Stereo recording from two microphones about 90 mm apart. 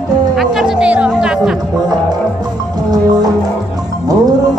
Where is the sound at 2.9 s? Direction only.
45° right (ahead or behind).